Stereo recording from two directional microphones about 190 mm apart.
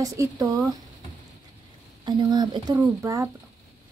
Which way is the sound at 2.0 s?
25° right (ahead or behind).